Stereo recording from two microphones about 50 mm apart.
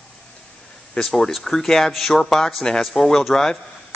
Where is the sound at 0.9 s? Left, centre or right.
Centre.